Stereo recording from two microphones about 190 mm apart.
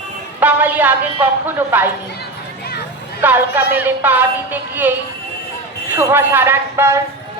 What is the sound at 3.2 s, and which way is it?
Speech, 10° right (ahead or behind).